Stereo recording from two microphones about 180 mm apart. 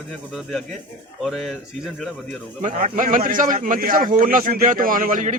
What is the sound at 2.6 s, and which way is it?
A man's voice, 45° right (ahead or behind).